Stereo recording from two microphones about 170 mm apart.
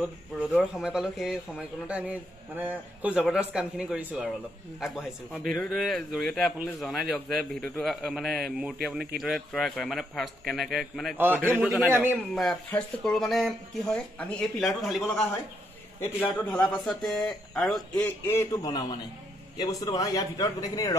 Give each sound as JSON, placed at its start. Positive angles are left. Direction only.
{"t": 0.7, "sound": "a man's voice", "side_deg": 0}
{"t": 11.1, "sound": "a man's voice", "side_deg": -10}
{"t": 12.4, "sound": "a man's voice", "side_deg": 0}
{"t": 16.2, "sound": "a man's voice", "side_deg": 10}
{"t": 18.0, "sound": "a man's voice", "side_deg": 15}